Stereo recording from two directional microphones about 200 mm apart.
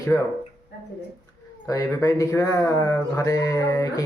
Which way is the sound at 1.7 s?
15° left (ahead or behind).